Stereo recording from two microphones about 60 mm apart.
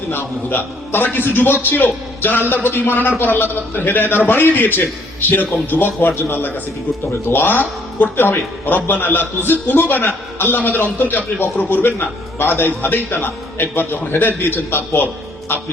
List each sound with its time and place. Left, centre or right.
0.1 s a man's voice: left